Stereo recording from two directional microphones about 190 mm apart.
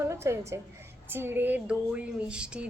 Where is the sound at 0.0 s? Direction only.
15° right (ahead or behind).